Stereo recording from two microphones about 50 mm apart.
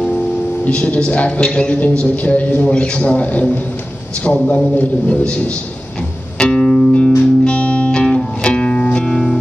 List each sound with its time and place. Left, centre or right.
0.7 s a man's voice: left
6.3 s music: centre